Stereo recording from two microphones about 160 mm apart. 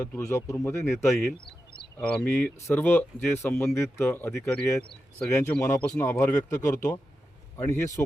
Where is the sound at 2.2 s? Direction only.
10° left (ahead or behind).